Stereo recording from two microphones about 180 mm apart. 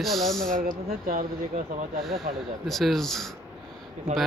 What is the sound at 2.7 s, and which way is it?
Speech, centre (ahead or behind).